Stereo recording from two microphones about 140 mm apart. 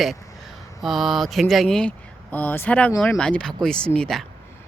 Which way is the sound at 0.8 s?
Centre (ahead or behind).